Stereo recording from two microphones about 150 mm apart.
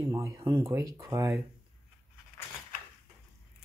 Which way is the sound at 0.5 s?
20° right (ahead or behind).